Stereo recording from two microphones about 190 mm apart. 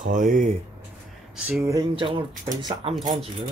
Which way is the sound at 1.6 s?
20° right (ahead or behind).